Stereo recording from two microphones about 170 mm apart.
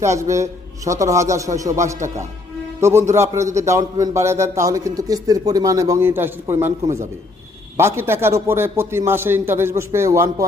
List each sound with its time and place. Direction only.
0.0 s a man's voice: 15° right (ahead or behind)
7.8 s a man's voice: 15° right (ahead or behind)